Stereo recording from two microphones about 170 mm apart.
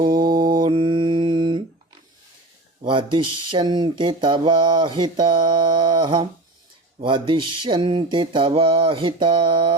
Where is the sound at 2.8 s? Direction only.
30° right (ahead or behind).